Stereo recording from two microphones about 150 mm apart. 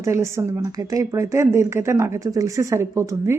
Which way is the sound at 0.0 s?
20° right (ahead or behind).